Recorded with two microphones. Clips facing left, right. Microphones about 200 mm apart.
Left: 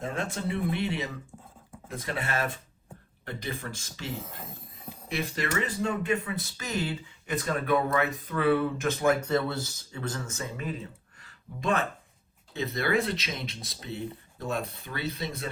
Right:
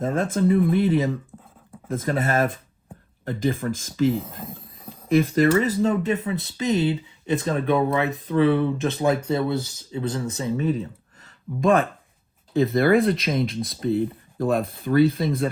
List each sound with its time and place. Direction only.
0.0 s speech: 50° right (ahead or behind)
5.1 s speech: 50° right (ahead or behind)
5.5 s speech: 40° right (ahead or behind)
6.6 s speech: 20° right (ahead or behind)
10.2 s speech: 30° right (ahead or behind)
11.2 s a sound: 50° right (ahead or behind)
12.5 s speech: 50° right (ahead or behind)